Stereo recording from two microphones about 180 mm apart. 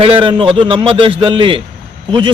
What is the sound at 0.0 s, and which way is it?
Speech, 30° right (ahead or behind).